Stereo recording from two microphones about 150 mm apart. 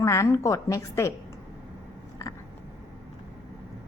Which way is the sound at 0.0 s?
20° left (ahead or behind).